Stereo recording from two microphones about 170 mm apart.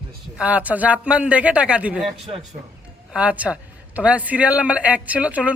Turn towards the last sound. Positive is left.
turn(degrees=-10)  # may be behind; listen again after turning